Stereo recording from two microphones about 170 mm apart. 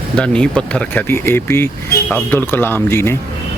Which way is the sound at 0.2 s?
5° left (ahead or behind).